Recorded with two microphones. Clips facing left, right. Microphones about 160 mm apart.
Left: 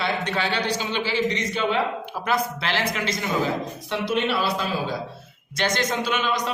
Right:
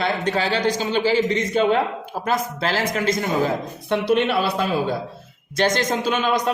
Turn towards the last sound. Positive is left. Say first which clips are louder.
# right 4 dB
turn(degrees=-45)  # may be behind; listen again after turning